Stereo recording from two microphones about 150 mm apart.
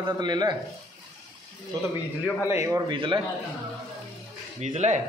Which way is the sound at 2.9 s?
30° right (ahead or behind).